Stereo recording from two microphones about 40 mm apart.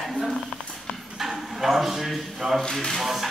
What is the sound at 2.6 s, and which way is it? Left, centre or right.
Speech, centre.